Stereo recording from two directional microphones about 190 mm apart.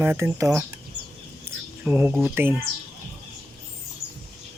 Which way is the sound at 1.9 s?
10° right (ahead or behind).